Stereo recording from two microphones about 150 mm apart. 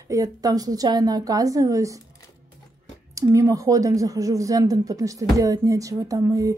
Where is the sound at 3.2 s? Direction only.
20° right (ahead or behind).